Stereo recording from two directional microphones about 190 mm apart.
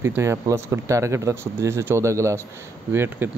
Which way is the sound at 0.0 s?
15° right (ahead or behind).